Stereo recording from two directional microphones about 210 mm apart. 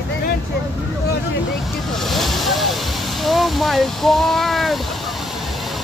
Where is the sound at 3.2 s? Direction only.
Centre (ahead or behind).